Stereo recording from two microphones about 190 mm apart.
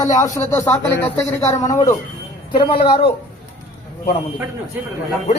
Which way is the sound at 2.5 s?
25° left (ahead or behind).